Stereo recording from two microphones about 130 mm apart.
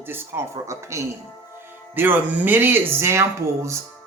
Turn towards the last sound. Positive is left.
turn(degrees=-20)  # may be behind; listen again after turning